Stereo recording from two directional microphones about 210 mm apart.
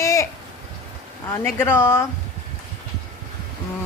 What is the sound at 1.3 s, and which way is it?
Speech, 10° left (ahead or behind).